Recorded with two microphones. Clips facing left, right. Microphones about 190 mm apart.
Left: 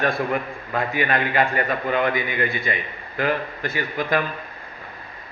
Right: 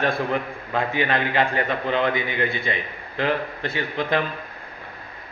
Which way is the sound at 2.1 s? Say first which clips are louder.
Even; 25° right (ahead or behind).